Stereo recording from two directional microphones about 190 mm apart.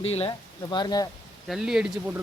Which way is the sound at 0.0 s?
30° left (ahead or behind).